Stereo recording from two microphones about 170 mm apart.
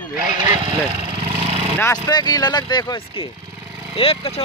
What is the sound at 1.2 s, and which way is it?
Vehicle, 35° right (ahead or behind).